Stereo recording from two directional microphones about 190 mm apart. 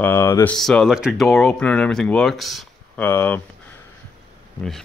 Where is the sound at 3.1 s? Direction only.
10° left (ahead or behind).